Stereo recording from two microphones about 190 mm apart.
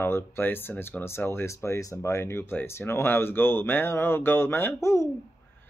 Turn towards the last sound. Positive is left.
turn(degrees=15)  # may be behind; listen again after turning